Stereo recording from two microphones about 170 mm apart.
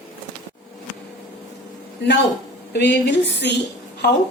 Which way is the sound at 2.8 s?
90° left.